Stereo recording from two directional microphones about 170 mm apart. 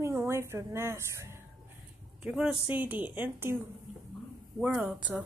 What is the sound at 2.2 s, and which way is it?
A woman's voice, 5° right (ahead or behind).